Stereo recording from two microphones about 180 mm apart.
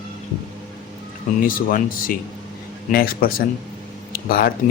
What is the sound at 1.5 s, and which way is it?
Speech, 50° left (ahead or behind).